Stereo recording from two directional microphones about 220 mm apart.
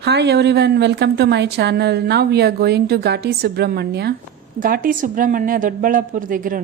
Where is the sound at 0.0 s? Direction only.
50° right (ahead or behind).